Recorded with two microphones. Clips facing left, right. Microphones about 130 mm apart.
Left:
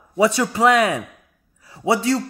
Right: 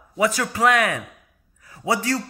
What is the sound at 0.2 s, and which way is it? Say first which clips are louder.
Speech: left 4 dB; 30° left (ahead or behind).